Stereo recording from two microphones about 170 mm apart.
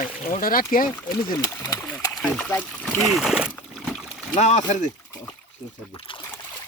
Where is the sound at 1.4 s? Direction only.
20° left (ahead or behind).